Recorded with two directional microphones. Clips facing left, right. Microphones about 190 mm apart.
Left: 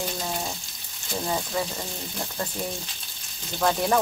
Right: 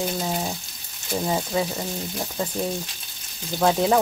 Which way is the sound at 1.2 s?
15° right (ahead or behind).